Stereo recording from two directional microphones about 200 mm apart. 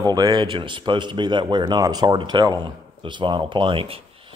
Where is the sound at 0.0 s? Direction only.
20° right (ahead or behind).